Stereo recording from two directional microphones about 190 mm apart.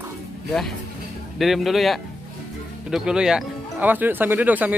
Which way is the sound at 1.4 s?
Centre (ahead or behind).